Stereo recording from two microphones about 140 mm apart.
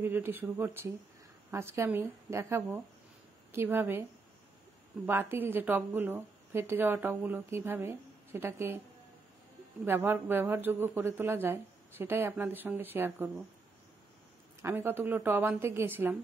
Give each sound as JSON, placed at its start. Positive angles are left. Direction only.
{"t": 0.0, "sound": "a woman's voice", "side_deg": -15}
{"t": 5.0, "sound": "a woman's voice", "side_deg": -15}
{"t": 9.8, "sound": "a woman's voice", "side_deg": -15}
{"t": 14.6, "sound": "a woman's voice", "side_deg": -15}